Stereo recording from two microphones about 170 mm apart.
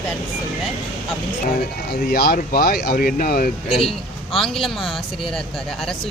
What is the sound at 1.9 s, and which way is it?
Speech, 65° left (ahead or behind).